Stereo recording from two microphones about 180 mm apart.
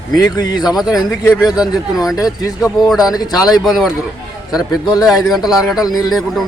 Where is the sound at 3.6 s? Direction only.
Centre (ahead or behind).